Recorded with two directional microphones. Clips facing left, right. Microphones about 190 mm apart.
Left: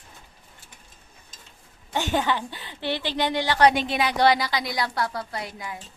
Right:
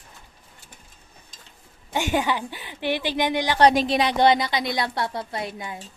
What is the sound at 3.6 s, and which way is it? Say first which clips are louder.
A woman's voice: right 3 dB; 30° right (ahead or behind).